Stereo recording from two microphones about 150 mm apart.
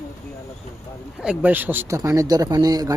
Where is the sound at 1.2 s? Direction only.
10° right (ahead or behind); by 2.9 s 25° right (ahead or behind).